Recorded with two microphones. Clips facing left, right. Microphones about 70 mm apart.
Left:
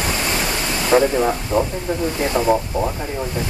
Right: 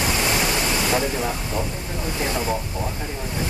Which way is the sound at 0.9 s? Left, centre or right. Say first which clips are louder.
Left 10 dB; left.